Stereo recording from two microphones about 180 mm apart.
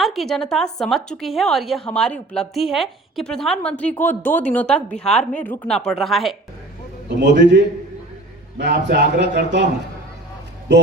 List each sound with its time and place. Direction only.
0.0 s a woman's voice: centre (ahead or behind)
7.2 s a man's voice: 75° right (ahead or behind)
10.7 s a man's voice: 75° right (ahead or behind)